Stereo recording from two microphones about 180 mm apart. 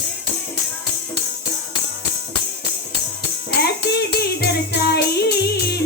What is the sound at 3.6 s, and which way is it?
Tambourine, 65° left (ahead or behind).